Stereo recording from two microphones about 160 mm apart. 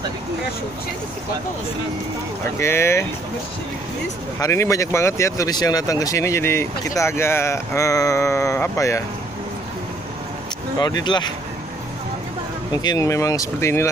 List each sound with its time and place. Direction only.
2.6 s speech: 15° left (ahead or behind)
4.4 s speech: 20° left (ahead or behind)
10.8 s speech: 25° left (ahead or behind)
12.7 s speech: 25° left (ahead or behind)